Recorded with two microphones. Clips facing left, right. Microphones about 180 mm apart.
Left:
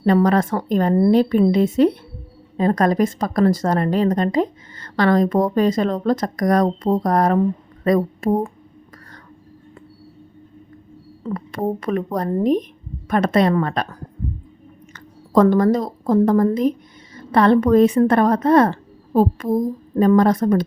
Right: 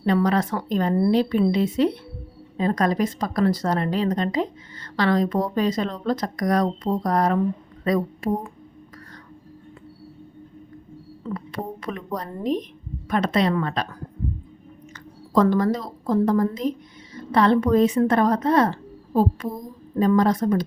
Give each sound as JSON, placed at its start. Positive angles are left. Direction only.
{"t": 0.0, "sound": "speech", "side_deg": 45}
{"t": 11.2, "sound": "speech", "side_deg": 45}
{"t": 14.9, "sound": "a woman's voice", "side_deg": 50}